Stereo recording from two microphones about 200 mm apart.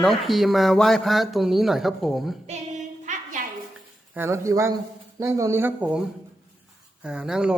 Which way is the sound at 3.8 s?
10° right (ahead or behind).